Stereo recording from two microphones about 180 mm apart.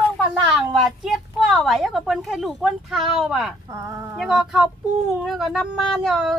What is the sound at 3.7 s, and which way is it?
Speech, 15° right (ahead or behind).